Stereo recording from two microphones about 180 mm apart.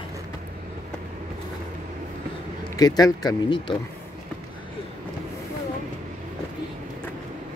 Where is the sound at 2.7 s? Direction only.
20° left (ahead or behind).